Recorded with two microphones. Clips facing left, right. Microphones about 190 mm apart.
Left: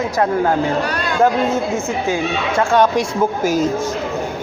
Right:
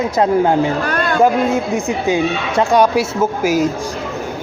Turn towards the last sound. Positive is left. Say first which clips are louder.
# right 1 dB
turn(degrees=-10)  # may be behind; listen again after turning